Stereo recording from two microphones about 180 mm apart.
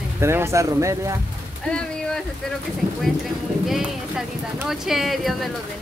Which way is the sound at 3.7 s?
5° right (ahead or behind).